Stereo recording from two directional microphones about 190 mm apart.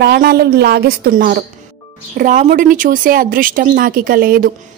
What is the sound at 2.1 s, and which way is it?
Speech, 45° right (ahead or behind).